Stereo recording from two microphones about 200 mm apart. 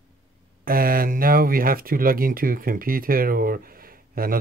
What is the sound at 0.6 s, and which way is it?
Speech, 45° right (ahead or behind).